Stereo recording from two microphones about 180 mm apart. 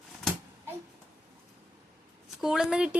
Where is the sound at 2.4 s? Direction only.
5° right (ahead or behind).